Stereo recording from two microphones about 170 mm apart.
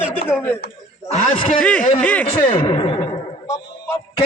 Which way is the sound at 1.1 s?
45° left (ahead or behind).